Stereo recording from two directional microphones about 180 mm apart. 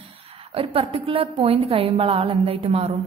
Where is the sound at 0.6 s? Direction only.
30° right (ahead or behind).